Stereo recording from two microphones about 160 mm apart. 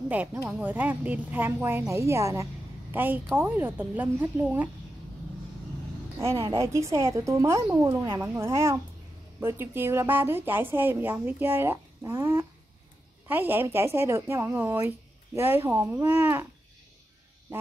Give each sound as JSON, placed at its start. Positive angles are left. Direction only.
{"t": 0.1, "sound": "speech", "side_deg": -10}
{"t": 6.1, "sound": "a woman's voice", "side_deg": -15}
{"t": 17.5, "sound": "a sound", "side_deg": -15}